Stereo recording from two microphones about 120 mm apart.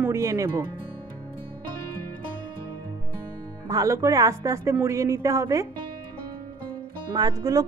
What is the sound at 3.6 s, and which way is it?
Speech, 25° right (ahead or behind).